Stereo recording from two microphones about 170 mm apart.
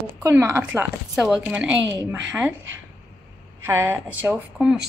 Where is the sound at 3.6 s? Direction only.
15° right (ahead or behind).